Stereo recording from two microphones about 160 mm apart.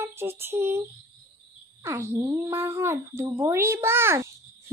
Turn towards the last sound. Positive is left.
turn(degrees=-15)  # may be behind; listen again after turning